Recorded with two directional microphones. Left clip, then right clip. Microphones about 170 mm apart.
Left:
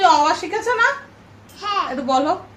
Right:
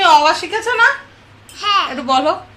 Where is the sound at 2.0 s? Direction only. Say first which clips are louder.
Right 1 dB; 20° right (ahead or behind).